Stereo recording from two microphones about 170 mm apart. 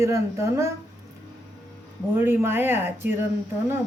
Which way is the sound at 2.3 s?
10° right (ahead or behind).